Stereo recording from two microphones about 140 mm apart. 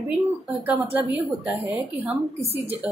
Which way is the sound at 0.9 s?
15° right (ahead or behind).